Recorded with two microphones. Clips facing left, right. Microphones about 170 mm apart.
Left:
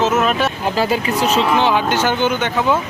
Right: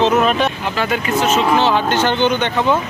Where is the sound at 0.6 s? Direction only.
35° left (ahead or behind).